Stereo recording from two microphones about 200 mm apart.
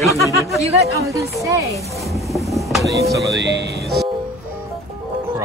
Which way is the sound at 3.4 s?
55° right (ahead or behind).